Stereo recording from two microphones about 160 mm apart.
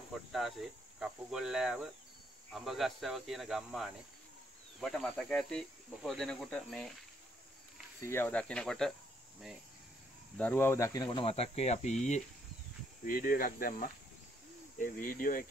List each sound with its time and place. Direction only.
0.1 s speech: centre (ahead or behind)
8.0 s speech: 15° left (ahead or behind)
10.3 s speech: 10° left (ahead or behind)
11.1 s speech: 35° left (ahead or behind)
13.0 s speech: 60° left (ahead or behind)